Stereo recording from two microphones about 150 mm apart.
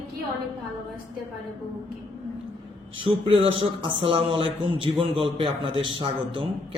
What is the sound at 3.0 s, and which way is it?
Speech, 35° right (ahead or behind).